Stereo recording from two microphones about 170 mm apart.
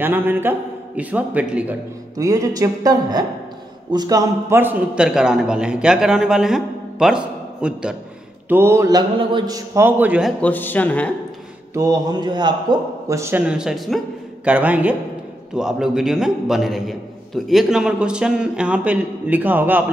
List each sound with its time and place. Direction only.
0.0 s a man's voice: 10° right (ahead or behind)
2.1 s a man's voice: 20° right (ahead or behind)
10.4 s speech: 10° left (ahead or behind)
11.7 s a man's voice: 20° right (ahead or behind)
13.5 s a man's voice: 5° right (ahead or behind)